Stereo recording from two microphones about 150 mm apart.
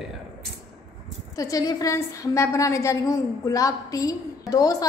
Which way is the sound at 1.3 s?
20° left (ahead or behind).